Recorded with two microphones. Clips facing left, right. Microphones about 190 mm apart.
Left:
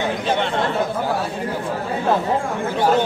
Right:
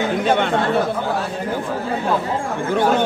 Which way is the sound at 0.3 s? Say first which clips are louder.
Right 4 dB; 50° right (ahead or behind).